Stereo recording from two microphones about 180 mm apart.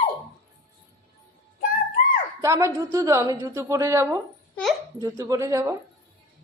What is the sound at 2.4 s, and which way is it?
A woman's voice, 15° right (ahead or behind).